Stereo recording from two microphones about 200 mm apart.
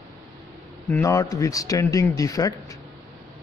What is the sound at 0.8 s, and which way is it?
A man's voice, 10° left (ahead or behind).